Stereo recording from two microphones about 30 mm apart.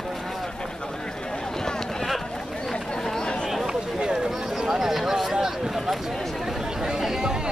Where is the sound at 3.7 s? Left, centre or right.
Right.